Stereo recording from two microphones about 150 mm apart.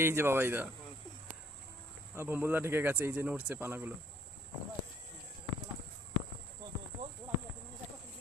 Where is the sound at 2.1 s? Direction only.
15° right (ahead or behind).